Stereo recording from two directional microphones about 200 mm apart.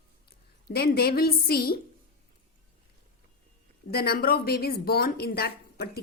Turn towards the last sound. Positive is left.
turn(degrees=50)  # may be behind; listen again after turning